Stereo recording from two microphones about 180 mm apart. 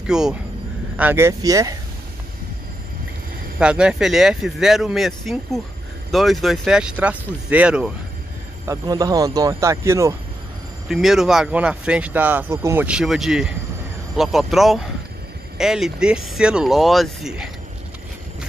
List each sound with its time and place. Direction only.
0.0 s speech: 5° right (ahead or behind); by 1.8 s 20° right (ahead or behind)
3.5 s speech: 5° right (ahead or behind)
8.6 s speech: 20° right (ahead or behind)
10.9 s speech: centre (ahead or behind)